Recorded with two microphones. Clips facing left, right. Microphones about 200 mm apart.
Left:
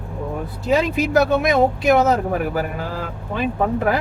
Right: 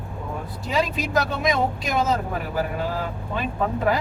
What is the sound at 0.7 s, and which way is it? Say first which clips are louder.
Speech: left 6 dB; 65° left (ahead or behind).